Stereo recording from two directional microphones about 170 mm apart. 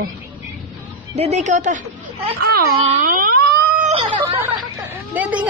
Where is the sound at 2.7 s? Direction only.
40° right (ahead or behind).